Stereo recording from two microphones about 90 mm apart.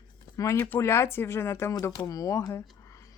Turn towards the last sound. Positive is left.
turn(degrees=35)  # may be behind; listen again after turning